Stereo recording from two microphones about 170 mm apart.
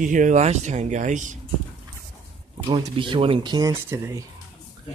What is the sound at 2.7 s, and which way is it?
Speech, 30° right (ahead or behind).